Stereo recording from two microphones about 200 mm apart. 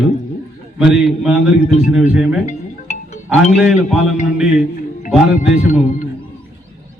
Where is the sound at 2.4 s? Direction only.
35° left (ahead or behind).